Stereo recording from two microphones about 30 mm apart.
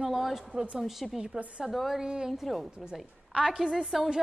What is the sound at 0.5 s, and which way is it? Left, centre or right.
Speech, right.